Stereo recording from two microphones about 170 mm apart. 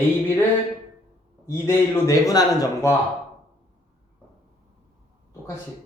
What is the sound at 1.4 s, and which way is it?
A man's voice, 15° left (ahead or behind).